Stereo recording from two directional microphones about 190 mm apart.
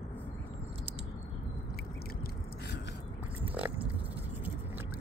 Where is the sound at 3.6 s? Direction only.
10° right (ahead or behind).